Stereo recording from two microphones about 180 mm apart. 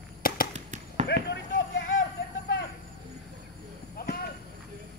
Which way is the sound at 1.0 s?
65° left (ahead or behind).